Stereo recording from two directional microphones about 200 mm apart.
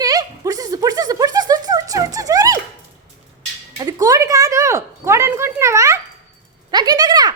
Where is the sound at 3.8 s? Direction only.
15° right (ahead or behind).